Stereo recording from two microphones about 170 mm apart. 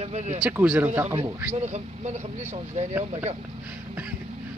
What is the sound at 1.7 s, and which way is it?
Speech, 40° right (ahead or behind).